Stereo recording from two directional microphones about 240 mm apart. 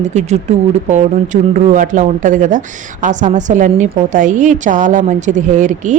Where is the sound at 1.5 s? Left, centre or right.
Right.